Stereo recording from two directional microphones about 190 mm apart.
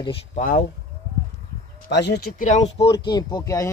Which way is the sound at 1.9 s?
65° left (ahead or behind).